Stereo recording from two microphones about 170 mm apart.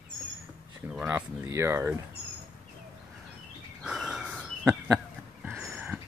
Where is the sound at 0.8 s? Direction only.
10° right (ahead or behind).